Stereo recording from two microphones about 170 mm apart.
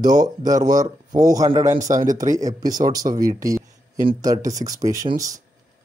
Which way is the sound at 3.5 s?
20° right (ahead or behind).